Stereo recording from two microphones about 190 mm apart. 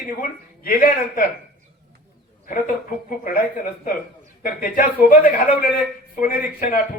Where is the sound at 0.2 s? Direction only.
45° left (ahead or behind).